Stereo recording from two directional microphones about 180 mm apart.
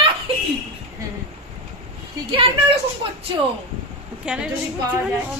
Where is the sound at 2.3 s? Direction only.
30° right (ahead or behind).